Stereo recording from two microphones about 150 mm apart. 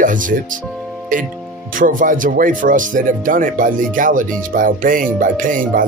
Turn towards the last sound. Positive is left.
turn(degrees=-65)  # may be behind; listen again after turning